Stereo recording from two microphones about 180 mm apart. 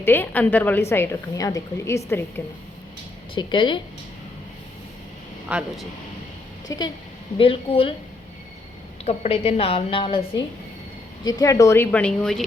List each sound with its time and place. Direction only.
0.0 s a woman's voice: 10° left (ahead or behind)
3.3 s a woman's voice: 25° left (ahead or behind)
5.5 s speech: 5° right (ahead or behind)
6.7 s a woman's voice: 20° left (ahead or behind)
9.0 s a woman's voice: 35° left (ahead or behind); by 12.4 s 5° left (ahead or behind)